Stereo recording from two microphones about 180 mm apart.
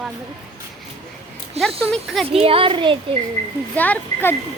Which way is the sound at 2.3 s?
30° right (ahead or behind).